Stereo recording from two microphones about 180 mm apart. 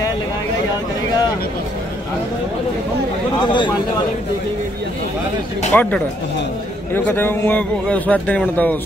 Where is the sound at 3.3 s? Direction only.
25° left (ahead or behind).